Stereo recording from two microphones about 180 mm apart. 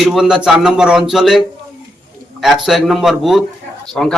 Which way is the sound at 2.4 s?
Centre (ahead or behind).